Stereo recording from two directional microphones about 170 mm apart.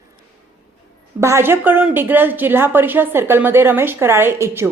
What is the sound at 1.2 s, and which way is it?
A woman's voice, 15° right (ahead or behind).